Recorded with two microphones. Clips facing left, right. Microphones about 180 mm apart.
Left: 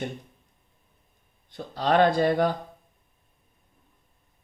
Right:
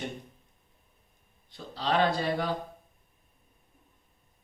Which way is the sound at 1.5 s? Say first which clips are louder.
Left 6 dB; 50° left (ahead or behind).